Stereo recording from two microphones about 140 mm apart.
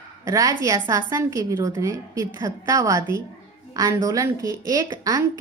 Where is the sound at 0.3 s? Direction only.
25° right (ahead or behind).